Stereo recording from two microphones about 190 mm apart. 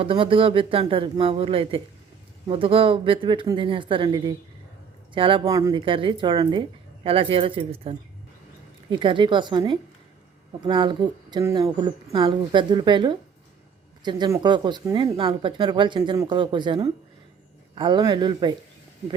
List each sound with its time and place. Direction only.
0.0 s speech: 30° right (ahead or behind)